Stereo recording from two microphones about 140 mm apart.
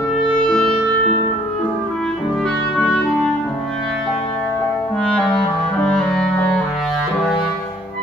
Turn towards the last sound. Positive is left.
turn(degrees=5)  # may be behind; listen again after turning